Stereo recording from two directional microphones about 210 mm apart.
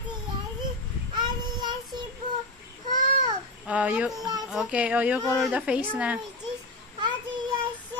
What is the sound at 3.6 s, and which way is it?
A woman's voice, 5° right (ahead or behind).